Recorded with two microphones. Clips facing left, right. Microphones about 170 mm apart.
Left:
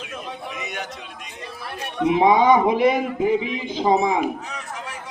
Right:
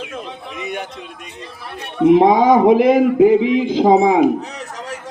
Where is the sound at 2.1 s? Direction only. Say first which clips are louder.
Right 2 dB; 45° right (ahead or behind).